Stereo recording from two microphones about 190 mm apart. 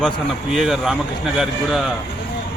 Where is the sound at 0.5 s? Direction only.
Centre (ahead or behind).